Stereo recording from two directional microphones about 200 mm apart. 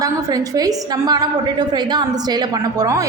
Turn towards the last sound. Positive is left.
turn(degrees=-20)  # may be behind; listen again after turning